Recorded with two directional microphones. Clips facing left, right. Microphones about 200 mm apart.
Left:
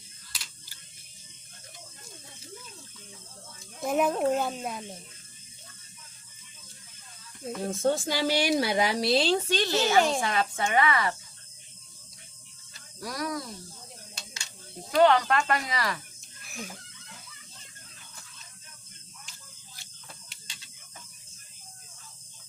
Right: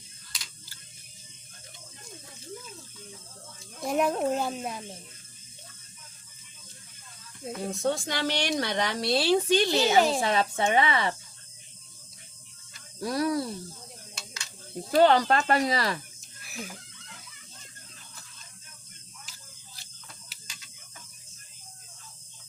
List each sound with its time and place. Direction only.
3.8 s speech: centre (ahead or behind)
7.6 s speech: centre (ahead or behind)
9.3 s speech: 15° right (ahead or behind)
13.0 s speech: 30° right (ahead or behind)
14.9 s speech: 30° right (ahead or behind)
16.4 s chicken: 5° right (ahead or behind)
20.3 s mechanisms: 5° right (ahead or behind)